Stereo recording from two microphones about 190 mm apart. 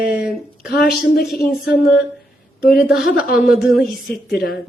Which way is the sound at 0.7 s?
50° left (ahead or behind).